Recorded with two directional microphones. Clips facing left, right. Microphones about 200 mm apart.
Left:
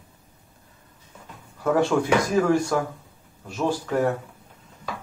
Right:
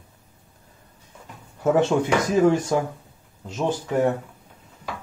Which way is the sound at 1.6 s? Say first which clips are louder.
Right 2 dB; 20° right (ahead or behind).